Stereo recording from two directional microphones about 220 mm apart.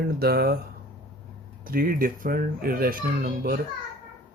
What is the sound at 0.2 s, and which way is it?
Speech, 45° right (ahead or behind).